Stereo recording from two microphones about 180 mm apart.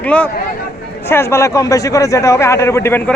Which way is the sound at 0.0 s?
5° left (ahead or behind).